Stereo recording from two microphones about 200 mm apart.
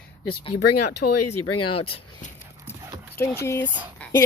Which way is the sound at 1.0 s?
60° left (ahead or behind).